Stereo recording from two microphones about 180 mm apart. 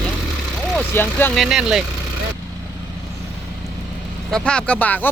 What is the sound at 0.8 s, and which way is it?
Speech, 10° left (ahead or behind).